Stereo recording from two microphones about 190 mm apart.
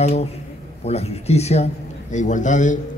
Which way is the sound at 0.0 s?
35° left (ahead or behind).